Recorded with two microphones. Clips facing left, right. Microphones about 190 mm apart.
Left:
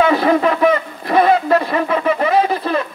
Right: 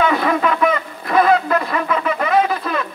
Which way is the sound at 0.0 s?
30° left (ahead or behind).